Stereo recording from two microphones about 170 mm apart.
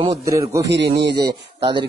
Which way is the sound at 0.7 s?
80° right.